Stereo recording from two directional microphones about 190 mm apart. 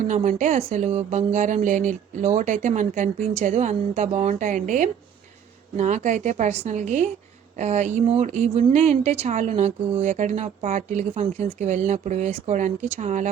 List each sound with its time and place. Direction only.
0.0 s speech: 40° right (ahead or behind)